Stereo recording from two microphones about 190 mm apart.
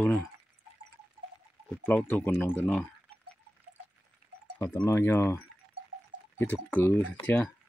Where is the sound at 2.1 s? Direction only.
10° left (ahead or behind).